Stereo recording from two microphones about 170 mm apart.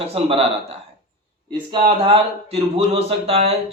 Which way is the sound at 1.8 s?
35° right (ahead or behind).